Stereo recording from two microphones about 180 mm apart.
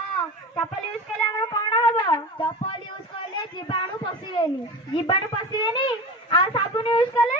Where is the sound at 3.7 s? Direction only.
30° left (ahead or behind).